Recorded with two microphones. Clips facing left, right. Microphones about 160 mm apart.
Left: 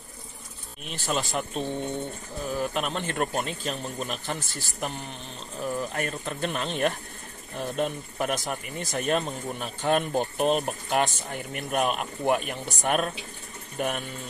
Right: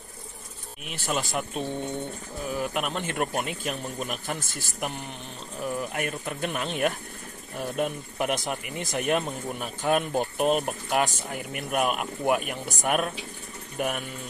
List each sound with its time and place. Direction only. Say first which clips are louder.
0.8 s speech: even; 10° right (ahead or behind)